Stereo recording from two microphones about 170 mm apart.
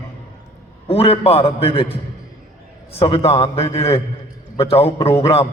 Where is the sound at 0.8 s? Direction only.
35° left (ahead or behind).